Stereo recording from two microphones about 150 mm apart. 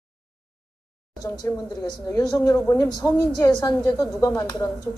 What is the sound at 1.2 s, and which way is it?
A woman's voice, 25° left (ahead or behind).